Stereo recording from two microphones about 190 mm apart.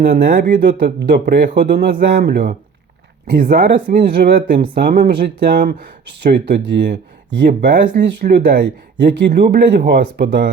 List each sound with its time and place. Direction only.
0.0 s speech: 55° right (ahead or behind)